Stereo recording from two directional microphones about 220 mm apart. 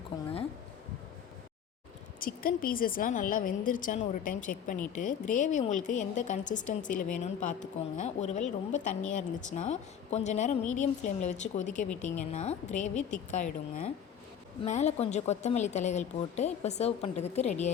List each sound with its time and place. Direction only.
2.1 s speech: 40° left (ahead or behind)